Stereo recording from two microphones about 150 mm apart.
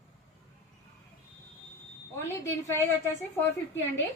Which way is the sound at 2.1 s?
15° left (ahead or behind).